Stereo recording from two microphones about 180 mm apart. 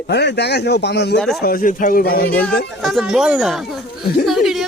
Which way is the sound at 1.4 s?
50° left (ahead or behind).